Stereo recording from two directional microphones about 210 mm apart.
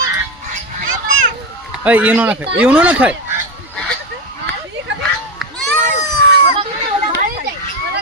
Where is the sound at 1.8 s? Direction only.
5° right (ahead or behind).